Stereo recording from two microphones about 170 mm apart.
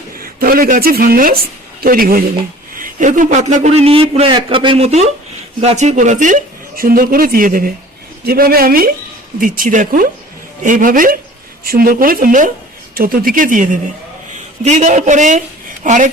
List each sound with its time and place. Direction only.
0.2 s a woman's voice: 60° right (ahead or behind)